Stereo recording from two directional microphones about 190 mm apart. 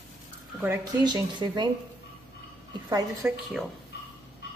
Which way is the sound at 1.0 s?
20° right (ahead or behind).